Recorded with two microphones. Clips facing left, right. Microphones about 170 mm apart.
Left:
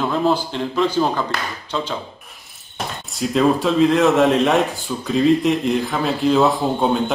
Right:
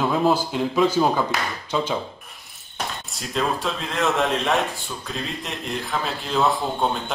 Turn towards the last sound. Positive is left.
turn(degrees=0)  # may be behind; listen again after turning